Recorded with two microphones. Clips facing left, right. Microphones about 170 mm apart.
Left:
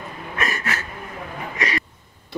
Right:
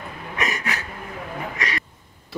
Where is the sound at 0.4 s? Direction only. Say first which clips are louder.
Even; 15° right (ahead or behind).